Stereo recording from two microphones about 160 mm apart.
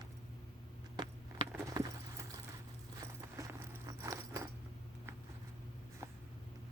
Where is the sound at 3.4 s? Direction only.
20° right (ahead or behind).